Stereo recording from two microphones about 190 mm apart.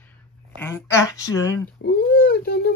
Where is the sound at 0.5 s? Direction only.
10° left (ahead or behind).